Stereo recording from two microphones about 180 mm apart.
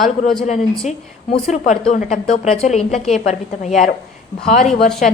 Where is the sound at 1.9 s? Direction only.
40° left (ahead or behind).